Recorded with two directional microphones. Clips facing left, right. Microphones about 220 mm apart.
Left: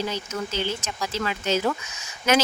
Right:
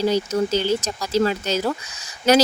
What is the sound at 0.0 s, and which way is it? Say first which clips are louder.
Speech: right 9 dB; 35° right (ahead or behind).